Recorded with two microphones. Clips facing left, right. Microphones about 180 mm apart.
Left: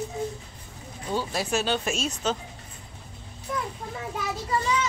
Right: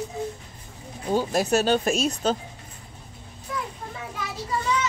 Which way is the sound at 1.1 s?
45° right (ahead or behind).